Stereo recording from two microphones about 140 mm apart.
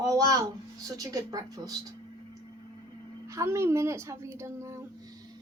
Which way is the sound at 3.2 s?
20° right (ahead or behind).